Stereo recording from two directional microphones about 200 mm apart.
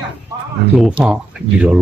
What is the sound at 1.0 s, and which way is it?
Speech, 5° right (ahead or behind).